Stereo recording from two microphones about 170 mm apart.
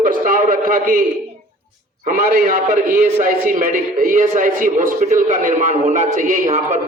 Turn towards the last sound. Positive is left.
turn(degrees=-45)  # may be behind; listen again after turning